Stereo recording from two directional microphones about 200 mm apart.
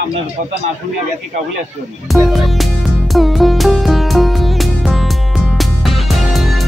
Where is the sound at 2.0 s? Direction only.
Centre (ahead or behind).